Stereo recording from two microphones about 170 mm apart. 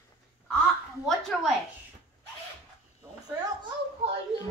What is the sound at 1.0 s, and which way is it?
Speech, centre (ahead or behind).